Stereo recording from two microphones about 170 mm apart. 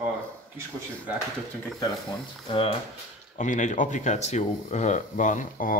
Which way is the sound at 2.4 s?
30° left (ahead or behind).